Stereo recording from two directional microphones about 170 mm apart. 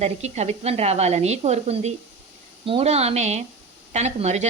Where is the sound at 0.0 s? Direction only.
40° right (ahead or behind).